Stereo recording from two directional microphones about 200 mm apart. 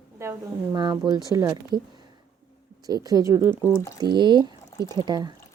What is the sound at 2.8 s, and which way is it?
A woman's voice, 20° right (ahead or behind).